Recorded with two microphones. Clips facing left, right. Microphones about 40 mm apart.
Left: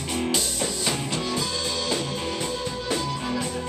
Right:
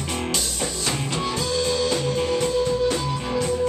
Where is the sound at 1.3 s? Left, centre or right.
Centre.